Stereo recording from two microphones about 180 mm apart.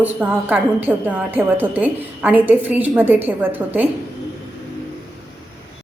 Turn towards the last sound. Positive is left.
turn(degrees=-10)  # may be behind; listen again after turning